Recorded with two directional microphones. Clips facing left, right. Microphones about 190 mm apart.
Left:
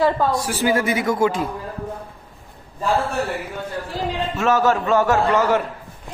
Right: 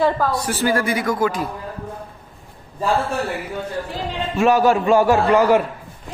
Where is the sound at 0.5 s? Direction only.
15° left (ahead or behind).